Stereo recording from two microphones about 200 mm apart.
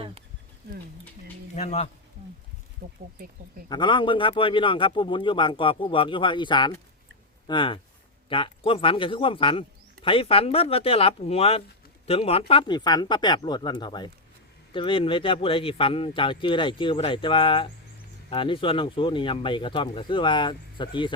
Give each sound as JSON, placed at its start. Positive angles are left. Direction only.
{"t": 1.5, "sound": "speech", "side_deg": 35}
{"t": 2.8, "sound": "speech", "side_deg": -45}
{"t": 3.7, "sound": "a man's voice", "side_deg": 25}